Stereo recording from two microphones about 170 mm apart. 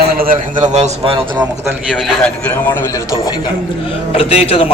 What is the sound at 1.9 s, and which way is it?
A man's voice, 5° left (ahead or behind).